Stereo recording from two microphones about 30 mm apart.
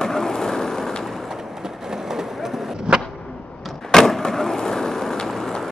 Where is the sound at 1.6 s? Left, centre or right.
Centre.